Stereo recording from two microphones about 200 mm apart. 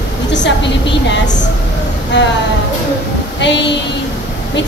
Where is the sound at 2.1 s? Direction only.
60° left (ahead or behind).